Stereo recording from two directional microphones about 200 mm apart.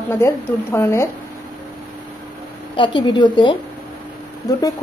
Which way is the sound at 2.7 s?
25° left (ahead or behind).